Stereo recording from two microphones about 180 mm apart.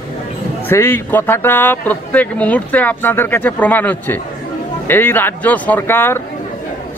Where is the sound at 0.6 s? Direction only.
15° left (ahead or behind).